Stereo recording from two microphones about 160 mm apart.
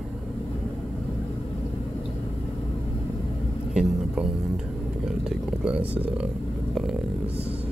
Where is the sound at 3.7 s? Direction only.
5° right (ahead or behind).